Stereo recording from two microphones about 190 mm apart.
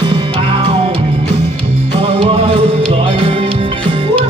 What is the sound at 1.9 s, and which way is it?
Music, 30° right (ahead or behind).